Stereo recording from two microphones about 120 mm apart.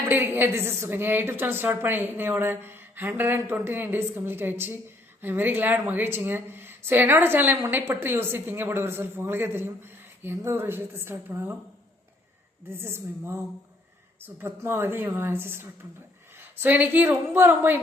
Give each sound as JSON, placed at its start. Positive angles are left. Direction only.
{"t": 0.1, "sound": "a woman's voice", "side_deg": -20}
{"t": 12.6, "sound": "a woman's voice", "side_deg": -20}